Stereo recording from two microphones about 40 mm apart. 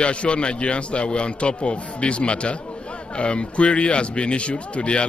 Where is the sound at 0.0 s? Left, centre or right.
Left.